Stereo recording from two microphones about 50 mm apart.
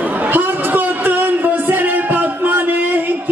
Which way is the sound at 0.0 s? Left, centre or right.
Right.